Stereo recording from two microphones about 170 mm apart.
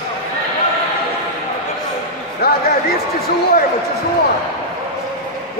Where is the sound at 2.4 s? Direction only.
70° left (ahead or behind).